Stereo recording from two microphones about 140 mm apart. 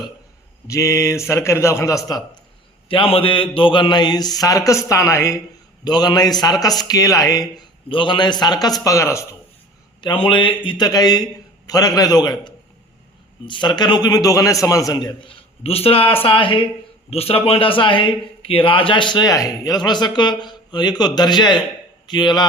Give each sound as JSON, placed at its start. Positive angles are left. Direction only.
{"t": 0.7, "sound": "a man's voice", "side_deg": 20}
{"t": 2.9, "sound": "a man's voice", "side_deg": 40}
{"t": 10.0, "sound": "a man's voice", "side_deg": 35}
{"t": 15.6, "sound": "a man's voice", "side_deg": 45}